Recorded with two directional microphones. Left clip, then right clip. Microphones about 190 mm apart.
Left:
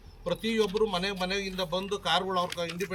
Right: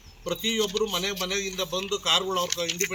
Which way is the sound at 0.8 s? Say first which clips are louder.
Right 1 dB; 15° left (ahead or behind).